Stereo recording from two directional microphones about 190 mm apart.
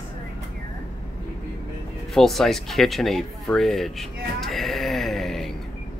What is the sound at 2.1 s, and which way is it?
Speech, centre (ahead or behind).